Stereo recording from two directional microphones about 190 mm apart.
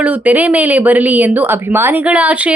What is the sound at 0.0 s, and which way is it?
Speech, 5° right (ahead or behind).